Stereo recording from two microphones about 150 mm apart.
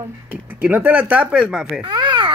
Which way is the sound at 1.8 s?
30° right (ahead or behind).